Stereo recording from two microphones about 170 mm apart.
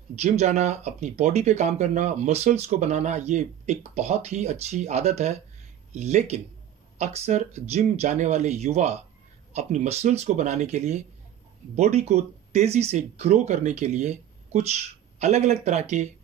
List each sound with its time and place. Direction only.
0.1 s speech: 40° right (ahead or behind)